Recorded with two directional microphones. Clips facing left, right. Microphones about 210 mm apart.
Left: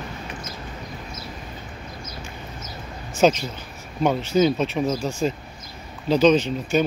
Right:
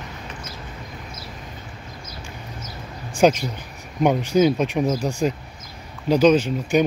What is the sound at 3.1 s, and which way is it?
Speech, 15° right (ahead or behind).